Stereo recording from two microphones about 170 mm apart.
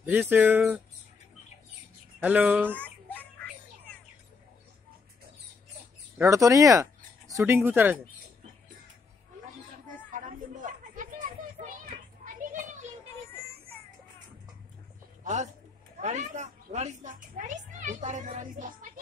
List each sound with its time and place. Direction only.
0.0 s speech: 10° right (ahead or behind)
2.2 s speech: 10° right (ahead or behind)
2.7 s a sound: 10° left (ahead or behind)
6.1 s speech: 15° right (ahead or behind)
10.1 s children playing: 50° right (ahead or behind)
12.4 s a sound: 50° right (ahead or behind)
15.2 s a man's voice: 45° right (ahead or behind)
16.0 s a sound: 45° right (ahead or behind)
17.7 s a child's voice: 45° right (ahead or behind)